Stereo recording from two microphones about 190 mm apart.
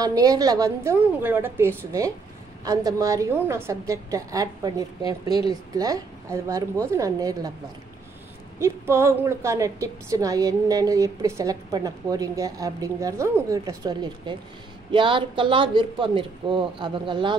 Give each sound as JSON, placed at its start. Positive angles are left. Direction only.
{"t": 0.0, "sound": "a woman's voice", "side_deg": -20}
{"t": 8.5, "sound": "a woman's voice", "side_deg": -15}